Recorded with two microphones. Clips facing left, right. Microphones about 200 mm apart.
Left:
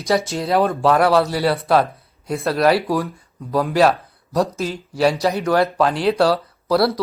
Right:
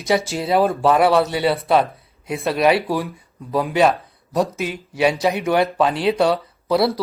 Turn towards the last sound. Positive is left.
turn(degrees=0)  # may be behind; listen again after turning